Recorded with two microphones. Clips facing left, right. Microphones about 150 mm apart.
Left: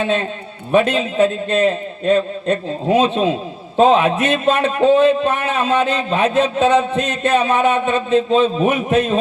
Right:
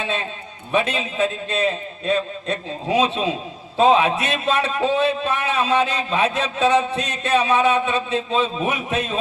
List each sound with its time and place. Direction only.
0.0 s a man's voice: 50° left (ahead or behind)